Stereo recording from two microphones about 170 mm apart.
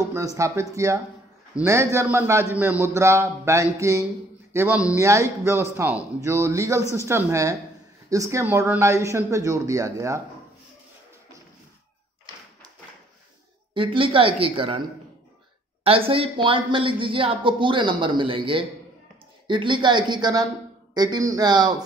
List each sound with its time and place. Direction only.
0.1 s a man's voice: 20° right (ahead or behind)
13.7 s a man's voice: 30° right (ahead or behind)
15.8 s a woman's voice: 35° right (ahead or behind)